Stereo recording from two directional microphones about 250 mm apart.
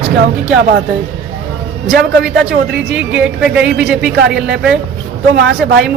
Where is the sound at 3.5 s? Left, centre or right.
Right.